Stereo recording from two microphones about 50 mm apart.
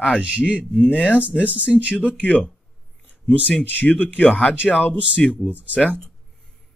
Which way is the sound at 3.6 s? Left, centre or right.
Left.